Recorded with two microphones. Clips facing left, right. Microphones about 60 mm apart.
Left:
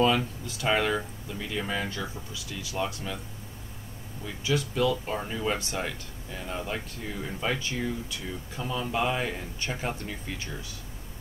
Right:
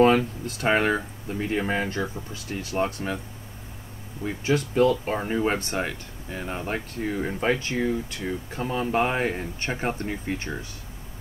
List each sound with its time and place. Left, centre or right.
0.0 s speech: right
4.2 s speech: right